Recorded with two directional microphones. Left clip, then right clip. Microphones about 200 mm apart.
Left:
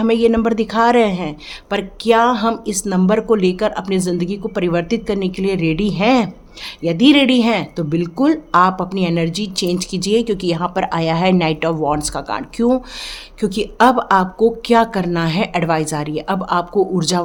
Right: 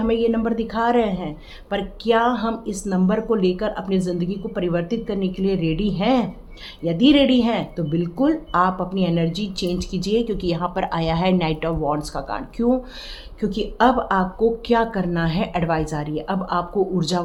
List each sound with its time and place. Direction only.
0.0 s speech: 55° left (ahead or behind)